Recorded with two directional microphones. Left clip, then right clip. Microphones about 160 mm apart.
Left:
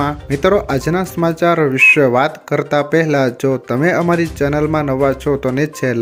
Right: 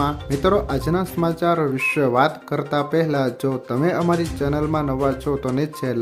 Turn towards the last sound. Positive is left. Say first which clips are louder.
# left 7 dB
turn(degrees=20)  # may be behind; listen again after turning